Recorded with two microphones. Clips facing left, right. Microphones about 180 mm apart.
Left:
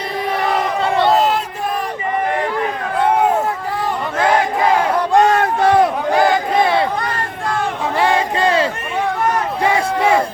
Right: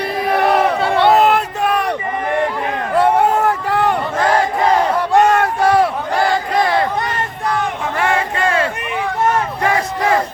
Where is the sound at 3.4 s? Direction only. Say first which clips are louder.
Right 5 dB; 70° right (ahead or behind).